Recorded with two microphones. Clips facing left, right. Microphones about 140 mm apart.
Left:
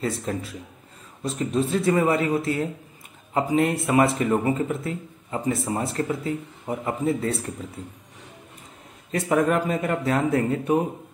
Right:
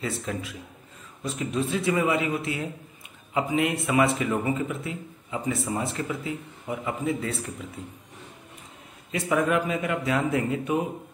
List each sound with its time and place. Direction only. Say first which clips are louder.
0.0 s speech: left 3 dB; 40° left (ahead or behind)
9.3 s speech: left 2 dB; 40° left (ahead or behind)